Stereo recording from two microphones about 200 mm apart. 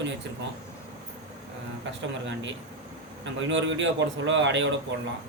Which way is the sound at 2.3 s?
65° right (ahead or behind).